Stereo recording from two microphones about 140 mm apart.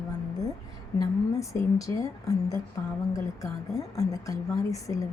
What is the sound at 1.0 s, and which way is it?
A woman's voice, 25° left (ahead or behind).